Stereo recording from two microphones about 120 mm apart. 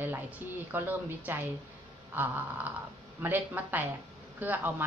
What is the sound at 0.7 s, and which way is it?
A woman's voice, 15° right (ahead or behind).